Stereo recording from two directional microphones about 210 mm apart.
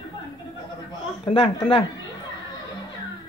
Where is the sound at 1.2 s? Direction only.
25° left (ahead or behind).